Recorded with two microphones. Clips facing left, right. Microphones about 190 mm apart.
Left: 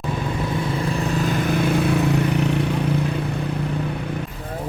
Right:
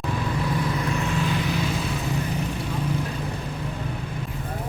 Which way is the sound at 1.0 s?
40° left (ahead or behind).